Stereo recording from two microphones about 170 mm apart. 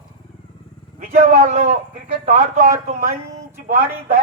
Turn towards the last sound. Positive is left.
turn(degrees=-45)  # may be behind; listen again after turning